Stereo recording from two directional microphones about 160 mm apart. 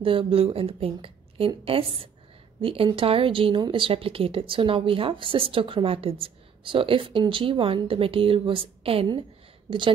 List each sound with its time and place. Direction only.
0.0 s speech: 35° right (ahead or behind)